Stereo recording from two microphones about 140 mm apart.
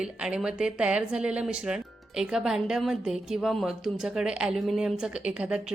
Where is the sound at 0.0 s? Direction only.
5° right (ahead or behind).